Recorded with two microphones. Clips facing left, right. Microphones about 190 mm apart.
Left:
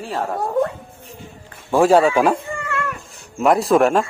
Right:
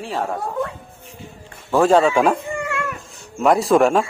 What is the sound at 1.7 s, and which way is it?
Speech, 10° left (ahead or behind).